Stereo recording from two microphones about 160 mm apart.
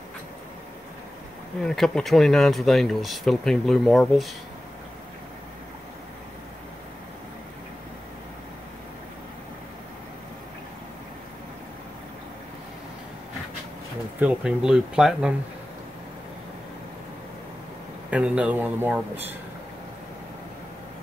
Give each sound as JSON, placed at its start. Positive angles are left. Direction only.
{"t": 1.6, "sound": "speech", "side_deg": 5}
{"t": 14.2, "sound": "speech", "side_deg": -5}
{"t": 18.1, "sound": "a man's voice", "side_deg": -5}